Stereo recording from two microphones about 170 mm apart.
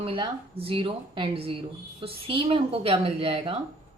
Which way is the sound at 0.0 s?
30° right (ahead or behind).